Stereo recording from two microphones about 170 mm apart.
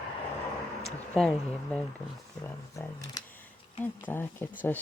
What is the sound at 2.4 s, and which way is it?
Speech, 20° left (ahead or behind).